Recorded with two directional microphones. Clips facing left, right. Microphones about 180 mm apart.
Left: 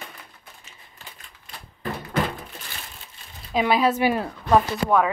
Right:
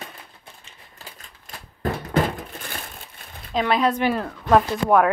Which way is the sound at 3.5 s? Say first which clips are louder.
Even; 5° left (ahead or behind).